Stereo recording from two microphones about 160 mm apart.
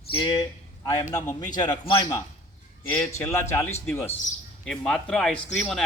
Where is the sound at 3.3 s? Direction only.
15° left (ahead or behind).